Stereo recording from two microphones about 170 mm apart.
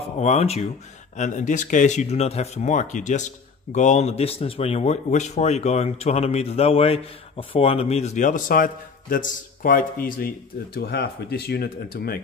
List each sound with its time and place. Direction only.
0.2 s speech: 40° left (ahead or behind); by 12.2 s 65° left (ahead or behind)